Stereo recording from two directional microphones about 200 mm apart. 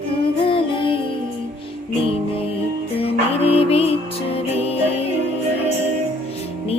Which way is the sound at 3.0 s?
30° left (ahead or behind).